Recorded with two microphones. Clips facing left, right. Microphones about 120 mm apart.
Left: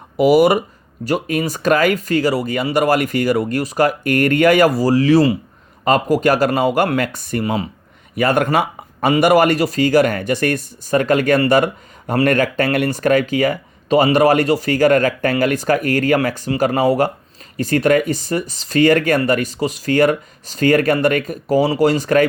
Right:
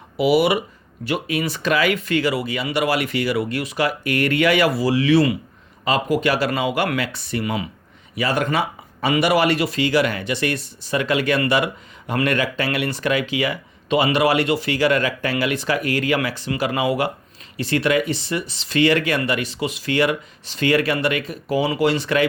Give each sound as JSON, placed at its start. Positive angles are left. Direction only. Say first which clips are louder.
{"t": 0.2, "sound": "speech", "louder": "left 5 dB", "side_deg": 45}
{"t": 8.1, "sound": "speech", "louder": "left 5 dB", "side_deg": 50}